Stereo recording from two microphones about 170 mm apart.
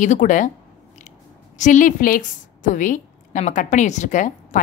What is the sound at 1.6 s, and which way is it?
A woman's voice, 45° left (ahead or behind).